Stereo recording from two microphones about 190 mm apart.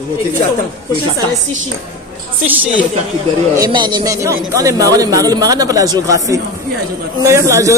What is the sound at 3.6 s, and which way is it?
Speech, 25° right (ahead or behind).